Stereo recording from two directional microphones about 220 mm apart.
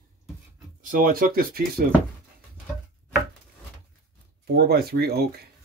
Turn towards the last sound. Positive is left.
turn(degrees=-45)  # may be behind; listen again after turning